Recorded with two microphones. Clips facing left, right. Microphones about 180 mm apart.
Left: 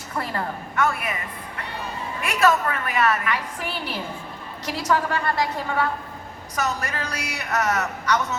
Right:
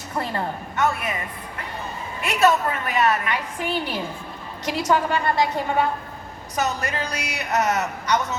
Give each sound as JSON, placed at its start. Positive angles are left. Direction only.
{"t": 0.2, "sound": "a woman's voice", "side_deg": -20}
{"t": 2.2, "sound": "a woman's voice", "side_deg": -25}